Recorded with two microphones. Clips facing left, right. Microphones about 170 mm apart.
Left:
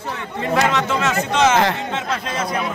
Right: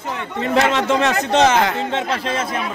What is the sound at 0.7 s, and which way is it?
Speech, 30° right (ahead or behind).